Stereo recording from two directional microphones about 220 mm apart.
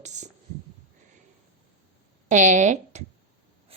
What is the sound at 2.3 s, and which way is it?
Speech, 35° right (ahead or behind).